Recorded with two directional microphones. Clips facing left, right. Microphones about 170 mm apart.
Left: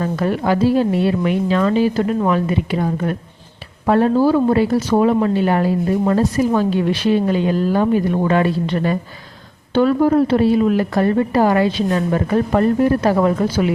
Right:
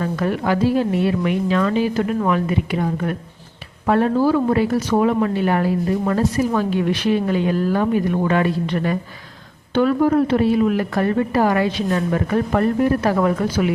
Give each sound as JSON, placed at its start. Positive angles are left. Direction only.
{"t": 0.0, "sound": "a woman's voice", "side_deg": 30}